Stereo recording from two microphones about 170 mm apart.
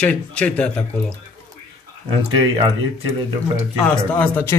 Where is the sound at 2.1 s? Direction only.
30° right (ahead or behind).